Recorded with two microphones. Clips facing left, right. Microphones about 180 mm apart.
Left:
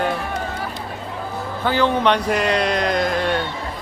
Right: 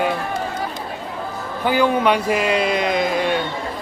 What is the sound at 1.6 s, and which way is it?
Speech, 10° right (ahead or behind).